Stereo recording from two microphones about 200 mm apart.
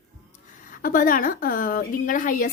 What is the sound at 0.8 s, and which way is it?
A woman's voice, 45° left (ahead or behind).